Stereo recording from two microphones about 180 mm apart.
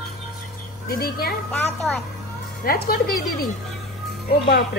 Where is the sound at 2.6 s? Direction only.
55° left (ahead or behind).